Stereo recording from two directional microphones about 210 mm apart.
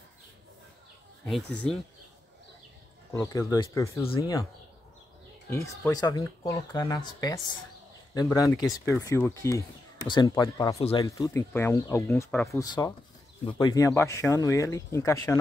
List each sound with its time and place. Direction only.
1.5 s speech: 5° left (ahead or behind)
3.1 s speech: 15° left (ahead or behind)
5.5 s speech: 15° left (ahead or behind)